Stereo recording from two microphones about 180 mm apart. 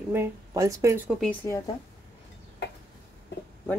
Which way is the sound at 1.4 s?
15° left (ahead or behind).